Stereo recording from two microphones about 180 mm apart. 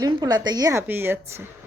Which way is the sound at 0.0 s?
25° right (ahead or behind).